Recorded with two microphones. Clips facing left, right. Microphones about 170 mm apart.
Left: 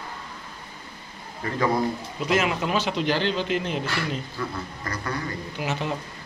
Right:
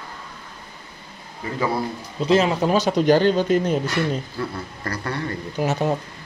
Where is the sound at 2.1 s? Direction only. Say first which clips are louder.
Right 7 dB; 30° right (ahead or behind).